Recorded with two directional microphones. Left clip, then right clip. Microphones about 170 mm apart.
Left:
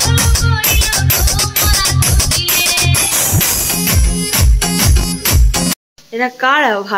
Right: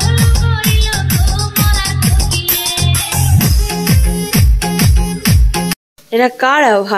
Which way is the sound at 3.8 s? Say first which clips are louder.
Even; 30° left (ahead or behind).